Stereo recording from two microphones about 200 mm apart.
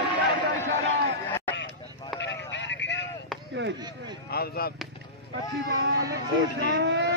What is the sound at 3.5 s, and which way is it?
Chop, 65° right (ahead or behind).